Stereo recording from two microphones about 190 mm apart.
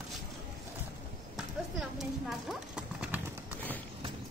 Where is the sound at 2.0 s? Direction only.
Centre (ahead or behind).